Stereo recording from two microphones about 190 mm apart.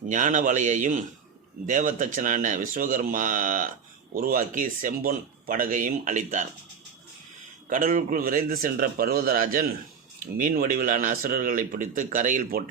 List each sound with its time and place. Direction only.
0.1 s a man's voice: 40° right (ahead or behind)
7.7 s speech: 45° right (ahead or behind)